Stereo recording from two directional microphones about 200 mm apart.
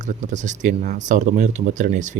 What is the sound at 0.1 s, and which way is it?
Speech, 40° right (ahead or behind).